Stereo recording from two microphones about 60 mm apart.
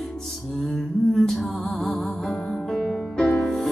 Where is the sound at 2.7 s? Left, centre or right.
Centre.